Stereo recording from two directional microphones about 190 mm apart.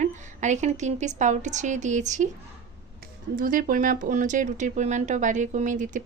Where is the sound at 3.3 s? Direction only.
45° right (ahead or behind).